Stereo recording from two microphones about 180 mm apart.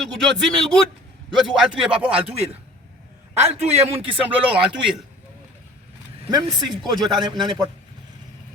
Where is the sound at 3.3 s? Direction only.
35° right (ahead or behind).